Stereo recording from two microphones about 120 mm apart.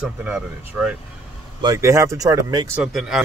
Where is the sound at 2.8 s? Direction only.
Centre (ahead or behind).